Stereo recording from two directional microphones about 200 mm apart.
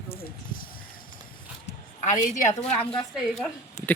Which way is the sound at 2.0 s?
40° left (ahead or behind).